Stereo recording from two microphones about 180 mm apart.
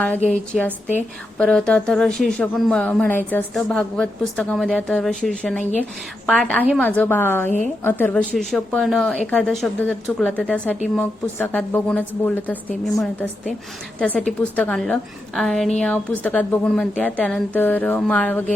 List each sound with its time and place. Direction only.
0.3 s a woman's voice: 5° left (ahead or behind)